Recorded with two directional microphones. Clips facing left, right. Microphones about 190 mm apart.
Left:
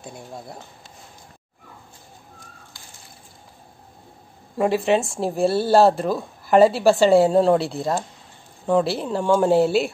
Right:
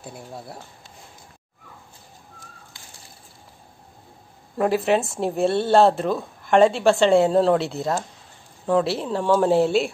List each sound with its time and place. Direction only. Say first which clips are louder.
0.0 s speech: even; 5° right (ahead or behind)
4.6 s speech: left 1 dB; centre (ahead or behind)